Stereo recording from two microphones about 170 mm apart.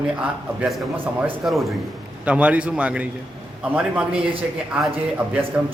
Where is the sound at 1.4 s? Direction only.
Centre (ahead or behind).